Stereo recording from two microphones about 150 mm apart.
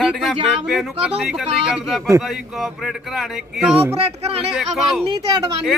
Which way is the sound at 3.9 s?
40° right (ahead or behind).